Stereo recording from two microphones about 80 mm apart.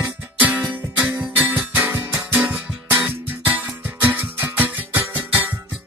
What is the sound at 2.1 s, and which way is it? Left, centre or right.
Music, centre.